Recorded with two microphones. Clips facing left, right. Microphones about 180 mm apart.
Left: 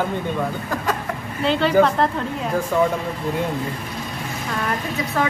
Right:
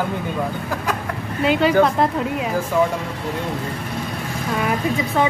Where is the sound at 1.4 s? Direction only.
10° right (ahead or behind).